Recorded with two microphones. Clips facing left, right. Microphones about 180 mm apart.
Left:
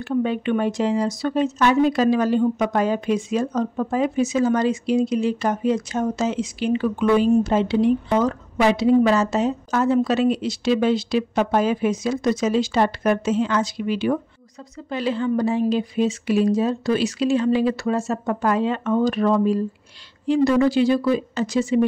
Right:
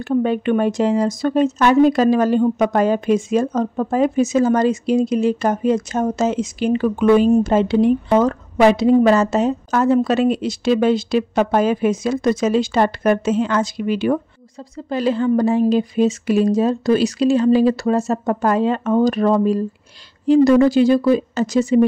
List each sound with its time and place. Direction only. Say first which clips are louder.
0.0 s speech: right 4 dB; 45° right (ahead or behind)